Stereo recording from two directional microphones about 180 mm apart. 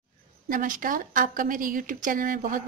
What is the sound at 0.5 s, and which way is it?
Speech, 45° right (ahead or behind).